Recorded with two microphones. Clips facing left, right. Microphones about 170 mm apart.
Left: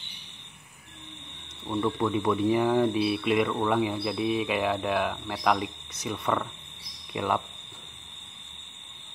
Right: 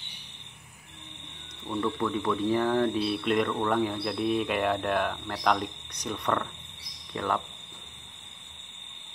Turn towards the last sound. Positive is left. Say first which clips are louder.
# left 2 dB
turn(degrees=10)  # may be behind; listen again after turning